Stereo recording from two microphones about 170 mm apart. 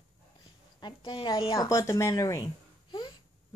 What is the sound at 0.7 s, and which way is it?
Speech, 25° left (ahead or behind).